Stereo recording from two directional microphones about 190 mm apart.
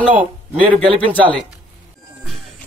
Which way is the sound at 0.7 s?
30° right (ahead or behind).